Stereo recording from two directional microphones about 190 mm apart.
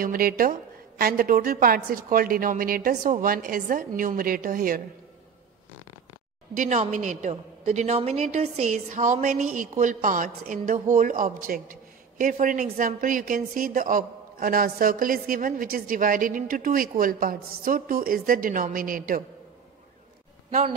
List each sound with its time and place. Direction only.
0.0 s a woman's voice: 50° right (ahead or behind)
6.5 s a woman's voice: 45° right (ahead or behind)